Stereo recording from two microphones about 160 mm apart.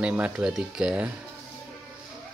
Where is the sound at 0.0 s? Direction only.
10° right (ahead or behind).